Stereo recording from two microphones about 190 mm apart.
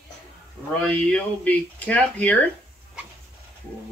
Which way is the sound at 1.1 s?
5° left (ahead or behind).